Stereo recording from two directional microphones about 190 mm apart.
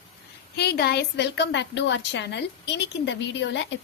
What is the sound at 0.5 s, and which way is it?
A woman's voice, 60° left (ahead or behind).